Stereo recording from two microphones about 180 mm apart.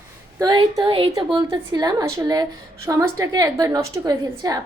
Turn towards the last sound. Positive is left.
turn(degrees=-20)  # may be behind; listen again after turning